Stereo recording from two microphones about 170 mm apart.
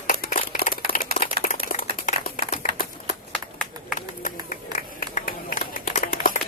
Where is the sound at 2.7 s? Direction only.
65° right (ahead or behind).